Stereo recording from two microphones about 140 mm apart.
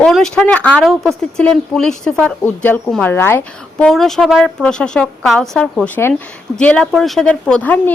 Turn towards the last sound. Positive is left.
turn(degrees=10)  # may be behind; listen again after turning